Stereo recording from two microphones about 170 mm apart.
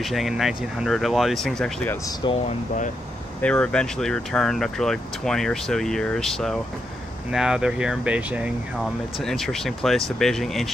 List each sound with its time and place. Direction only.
0.0 s speech: centre (ahead or behind)
2.2 s speech: 25° left (ahead or behind)
3.4 s speech: 5° left (ahead or behind)